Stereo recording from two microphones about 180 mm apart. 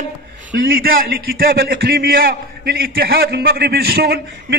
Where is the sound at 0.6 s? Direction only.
60° right (ahead or behind).